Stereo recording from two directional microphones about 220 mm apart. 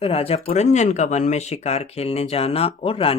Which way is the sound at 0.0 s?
25° left (ahead or behind).